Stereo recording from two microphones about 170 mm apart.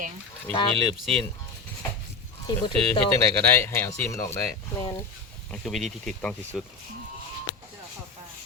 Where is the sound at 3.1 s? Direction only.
15° left (ahead or behind).